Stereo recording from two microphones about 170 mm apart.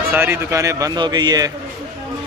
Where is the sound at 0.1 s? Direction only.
15° right (ahead or behind).